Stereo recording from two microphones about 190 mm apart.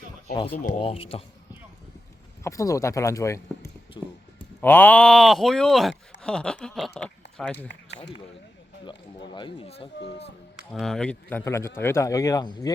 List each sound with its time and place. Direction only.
0.5 s speech: 45° left (ahead or behind)
0.8 s speech: 30° left (ahead or behind)
2.4 s speech: 15° left (ahead or behind)
4.0 s a sound: 25° left (ahead or behind)
4.6 s speech: 10° left (ahead or behind)
8.8 s speech: 25° left (ahead or behind)
10.7 s speech: centre (ahead or behind); by 12.7 s 20° left (ahead or behind)